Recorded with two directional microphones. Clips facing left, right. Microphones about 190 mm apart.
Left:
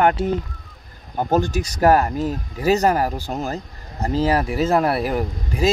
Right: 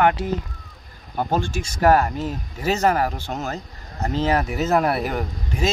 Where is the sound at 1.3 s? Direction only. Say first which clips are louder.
Left 7 dB; 40° left (ahead or behind).